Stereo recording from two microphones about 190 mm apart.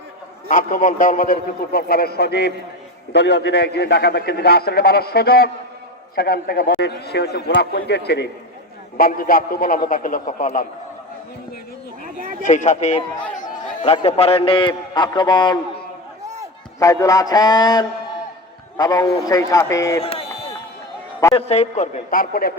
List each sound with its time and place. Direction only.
0.5 s a man's voice: 45° left (ahead or behind); by 8.3 s 60° left (ahead or behind)
9.0 s a man's voice: 50° left (ahead or behind)
12.4 s a man's voice: 40° left (ahead or behind); by 15.5 s 25° left (ahead or behind)
16.8 s a man's voice: 15° left (ahead or behind)
20.0 s a sound: 30° left (ahead or behind)
21.3 s a man's voice: 35° left (ahead or behind); by 22.5 s 50° left (ahead or behind)